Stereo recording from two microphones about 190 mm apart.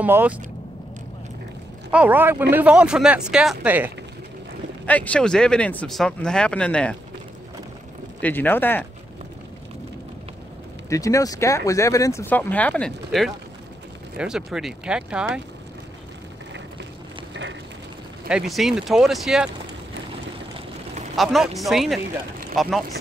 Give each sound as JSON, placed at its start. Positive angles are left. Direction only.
{"t": 0.0, "sound": "speech", "side_deg": -10}
{"t": 1.9, "sound": "speech", "side_deg": -10}
{"t": 4.8, "sound": "speech", "side_deg": 10}
{"t": 8.2, "sound": "speech", "side_deg": 10}
{"t": 10.9, "sound": "speech", "side_deg": 15}
{"t": 17.3, "sound": "a sound", "side_deg": -70}
{"t": 18.3, "sound": "speech", "side_deg": 0}
{"t": 21.2, "sound": "speech", "side_deg": 0}